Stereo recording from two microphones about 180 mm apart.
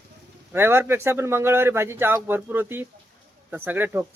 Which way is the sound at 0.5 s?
15° right (ahead or behind).